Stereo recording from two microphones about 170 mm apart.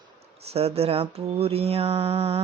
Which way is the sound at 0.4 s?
35° right (ahead or behind).